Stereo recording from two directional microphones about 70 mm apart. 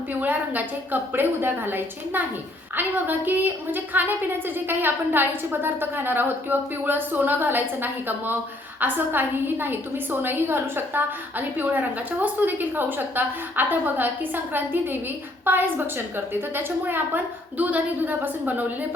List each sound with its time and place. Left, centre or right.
0.1 s a woman's voice: right